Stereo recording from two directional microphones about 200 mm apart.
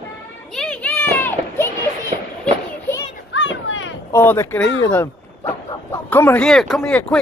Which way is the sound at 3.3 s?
65° left (ahead or behind).